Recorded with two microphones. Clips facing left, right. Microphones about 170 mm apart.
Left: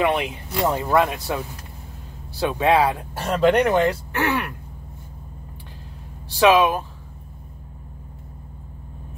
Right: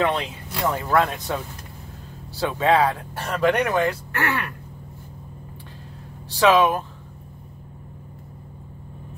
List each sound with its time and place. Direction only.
0.0 s speech: 15° left (ahead or behind)
2.4 s speech: 15° left (ahead or behind)
3.3 s speech: 30° left (ahead or behind)
6.4 s speech: 10° left (ahead or behind)